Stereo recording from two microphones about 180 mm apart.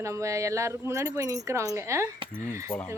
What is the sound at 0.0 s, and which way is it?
Speech, 15° right (ahead or behind).